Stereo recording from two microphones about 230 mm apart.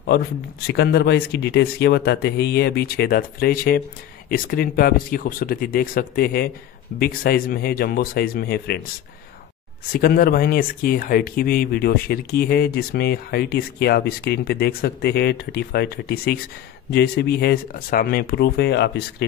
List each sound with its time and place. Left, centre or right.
0.7 s speech: left
9.9 s speech: left